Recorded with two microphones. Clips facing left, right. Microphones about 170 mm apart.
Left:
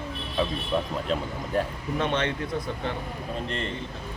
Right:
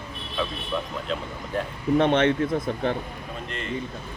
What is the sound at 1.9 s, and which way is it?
Speech, 55° right (ahead or behind).